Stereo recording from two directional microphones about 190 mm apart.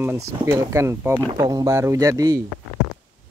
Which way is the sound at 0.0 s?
15° right (ahead or behind).